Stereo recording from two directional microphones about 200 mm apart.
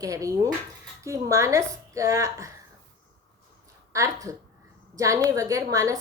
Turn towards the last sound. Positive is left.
turn(degrees=-15)  # may be behind; listen again after turning